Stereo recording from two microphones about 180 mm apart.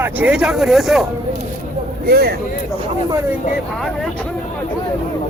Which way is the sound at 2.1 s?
60° right (ahead or behind).